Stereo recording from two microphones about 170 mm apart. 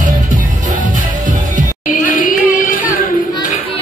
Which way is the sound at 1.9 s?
55° left (ahead or behind).